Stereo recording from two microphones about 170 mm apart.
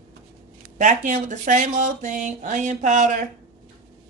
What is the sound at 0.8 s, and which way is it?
Speech, 45° right (ahead or behind).